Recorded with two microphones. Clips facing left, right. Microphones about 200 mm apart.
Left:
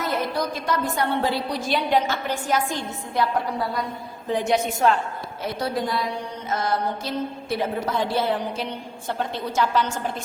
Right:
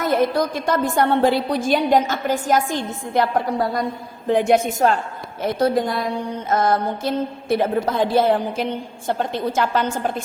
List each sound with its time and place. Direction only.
0.1 s a woman's voice: 50° right (ahead or behind)
4.3 s a woman's voice: 55° right (ahead or behind)